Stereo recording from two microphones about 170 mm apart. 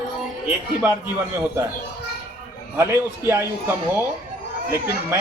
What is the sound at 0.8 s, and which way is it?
Speech, 10° right (ahead or behind).